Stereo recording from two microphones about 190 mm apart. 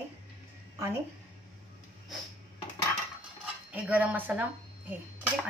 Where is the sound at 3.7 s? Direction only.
10° right (ahead or behind).